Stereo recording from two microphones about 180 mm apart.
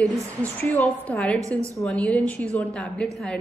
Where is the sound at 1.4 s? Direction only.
20° right (ahead or behind).